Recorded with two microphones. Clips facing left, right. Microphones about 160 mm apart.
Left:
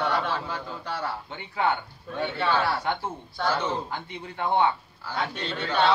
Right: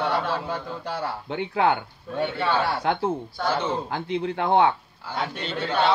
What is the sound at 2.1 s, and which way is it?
A man's voice, 5° right (ahead or behind).